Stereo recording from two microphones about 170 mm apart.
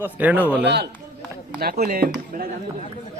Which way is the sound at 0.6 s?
85° right.